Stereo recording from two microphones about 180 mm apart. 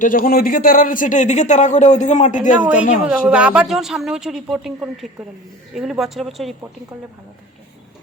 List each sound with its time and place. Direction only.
0.0 s speech: 50° left (ahead or behind)
3.1 s a woman's voice: 5° right (ahead or behind)